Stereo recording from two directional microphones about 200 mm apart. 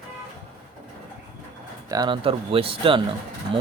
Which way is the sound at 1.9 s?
20° right (ahead or behind).